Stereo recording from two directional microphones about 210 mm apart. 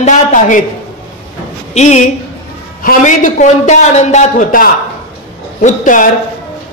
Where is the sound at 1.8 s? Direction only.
35° left (ahead or behind).